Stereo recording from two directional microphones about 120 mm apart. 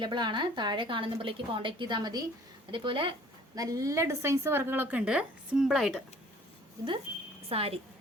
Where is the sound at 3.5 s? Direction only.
30° right (ahead or behind); by 6.0 s centre (ahead or behind).